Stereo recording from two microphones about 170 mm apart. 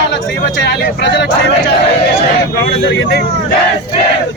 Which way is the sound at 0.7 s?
90° left.